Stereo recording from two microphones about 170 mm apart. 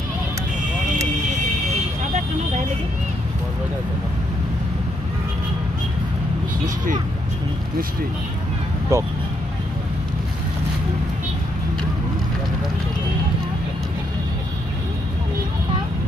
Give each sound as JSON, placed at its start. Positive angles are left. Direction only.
{"t": 8.9, "sound": "speech", "side_deg": -15}